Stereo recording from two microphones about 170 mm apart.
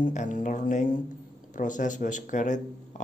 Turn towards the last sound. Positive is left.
turn(degrees=45)  # may be behind; listen again after turning